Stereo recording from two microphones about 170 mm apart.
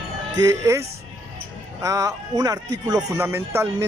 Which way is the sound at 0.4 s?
20° right (ahead or behind).